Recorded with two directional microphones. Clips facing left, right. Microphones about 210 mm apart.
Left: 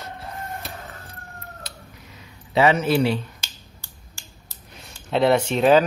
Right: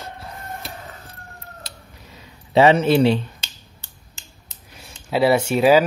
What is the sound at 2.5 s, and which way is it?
Speech, 30° right (ahead or behind).